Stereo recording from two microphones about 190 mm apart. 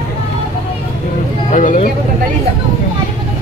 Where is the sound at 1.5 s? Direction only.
45° left (ahead or behind).